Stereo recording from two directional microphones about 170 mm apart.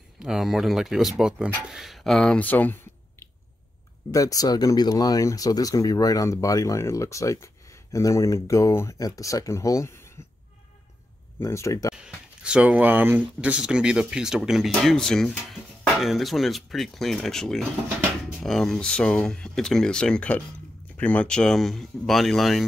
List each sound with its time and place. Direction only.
0.2 s speech: 5° right (ahead or behind); by 10.1 s 15° left (ahead or behind)
11.3 s speech: 15° left (ahead or behind)
11.9 s a sound: 5° right (ahead or behind)
13.4 s speech: 5° right (ahead or behind)